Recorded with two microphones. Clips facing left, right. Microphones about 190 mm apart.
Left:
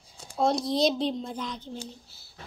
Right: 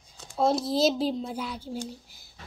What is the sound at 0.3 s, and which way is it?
A woman's voice, centre (ahead or behind).